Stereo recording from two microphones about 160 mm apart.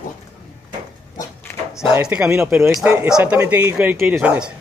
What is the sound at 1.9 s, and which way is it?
Speech, 5° right (ahead or behind).